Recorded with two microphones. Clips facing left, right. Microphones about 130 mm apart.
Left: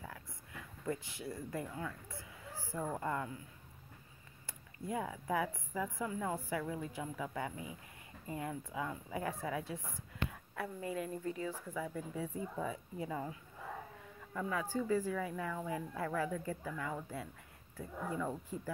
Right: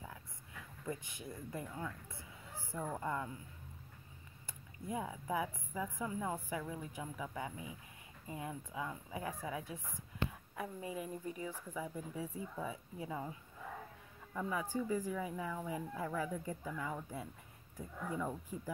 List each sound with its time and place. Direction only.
0.8 s speech: 20° right (ahead or behind)
3.0 s speech: 15° right (ahead or behind)
4.9 s speech: 15° right (ahead or behind)
14.5 s speech: 15° right (ahead or behind)